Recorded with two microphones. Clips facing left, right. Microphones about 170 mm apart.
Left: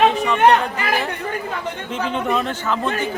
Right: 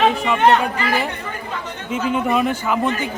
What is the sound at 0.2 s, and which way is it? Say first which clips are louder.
Speech: even; 10° right (ahead or behind).